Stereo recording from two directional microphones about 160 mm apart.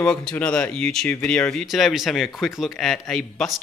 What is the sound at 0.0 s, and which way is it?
Speech, 5° left (ahead or behind).